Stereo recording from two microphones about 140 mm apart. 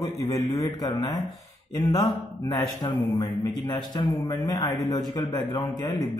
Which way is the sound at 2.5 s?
35° left (ahead or behind).